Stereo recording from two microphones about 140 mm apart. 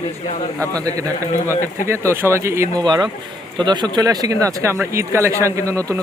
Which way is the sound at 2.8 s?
30° right (ahead or behind).